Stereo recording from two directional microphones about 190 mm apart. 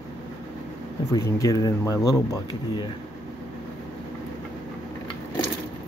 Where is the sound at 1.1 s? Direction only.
20° left (ahead or behind).